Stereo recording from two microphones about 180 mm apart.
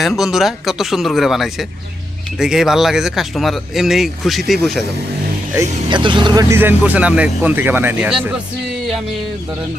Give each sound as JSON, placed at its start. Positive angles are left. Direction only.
{"t": 0.0, "sound": "speech", "side_deg": 0}
{"t": 5.9, "sound": "speech", "side_deg": -25}
{"t": 6.5, "sound": "speech", "side_deg": -10}